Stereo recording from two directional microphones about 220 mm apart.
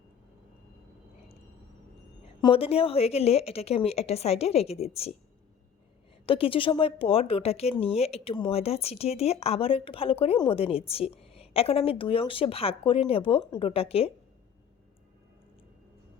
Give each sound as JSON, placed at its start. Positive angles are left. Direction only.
{"t": 2.4, "sound": "speech", "side_deg": 25}
{"t": 6.2, "sound": "speech", "side_deg": 25}